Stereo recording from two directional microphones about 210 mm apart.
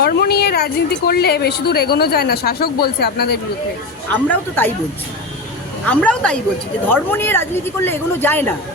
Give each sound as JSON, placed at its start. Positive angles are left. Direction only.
{"t": 0.0, "sound": "a woman's voice", "side_deg": 50}
{"t": 4.1, "sound": "speech", "side_deg": 10}
{"t": 5.8, "sound": "speech", "side_deg": 5}